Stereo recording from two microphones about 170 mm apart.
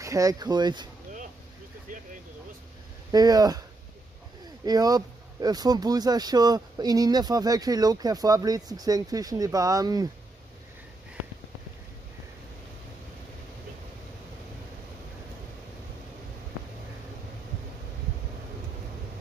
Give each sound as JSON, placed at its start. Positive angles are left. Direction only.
{"t": 0.0, "sound": "speech", "side_deg": -20}
{"t": 1.9, "sound": "vehicle", "side_deg": -50}
{"t": 3.1, "sound": "speech", "side_deg": -20}
{"t": 4.6, "sound": "speech", "side_deg": -20}